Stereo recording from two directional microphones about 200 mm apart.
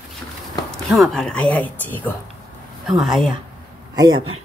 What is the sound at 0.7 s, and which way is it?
Speech, centre (ahead or behind).